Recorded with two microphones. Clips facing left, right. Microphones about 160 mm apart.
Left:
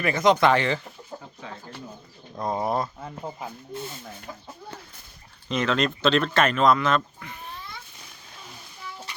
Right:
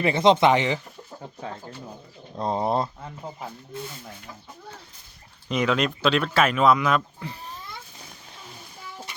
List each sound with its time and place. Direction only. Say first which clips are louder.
0.0 s speech: right 2 dB; 25° right (ahead or behind)
2.4 s speech: right 2 dB; 30° right (ahead or behind)
5.5 s speech: right 1 dB; 10° right (ahead or behind)
7.2 s babbling: right 3 dB; 30° right (ahead or behind)